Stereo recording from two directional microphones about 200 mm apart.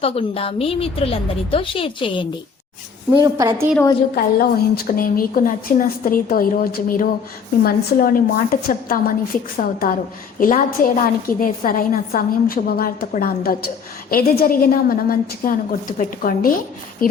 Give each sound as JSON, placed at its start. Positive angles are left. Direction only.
{"t": 0.0, "sound": "a woman's voice", "side_deg": 30}
{"t": 3.1, "sound": "a woman's voice", "side_deg": -20}
{"t": 4.1, "sound": "a woman's voice", "side_deg": 50}